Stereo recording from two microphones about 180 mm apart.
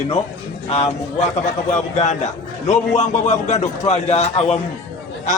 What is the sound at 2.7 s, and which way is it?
A man's voice, 40° left (ahead or behind).